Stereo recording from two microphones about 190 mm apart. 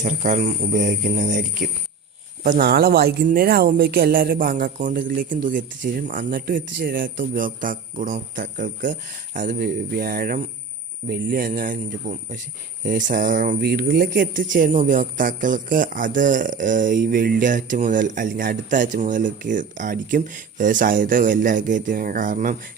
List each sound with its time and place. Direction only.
0.0 s speech: 40° right (ahead or behind)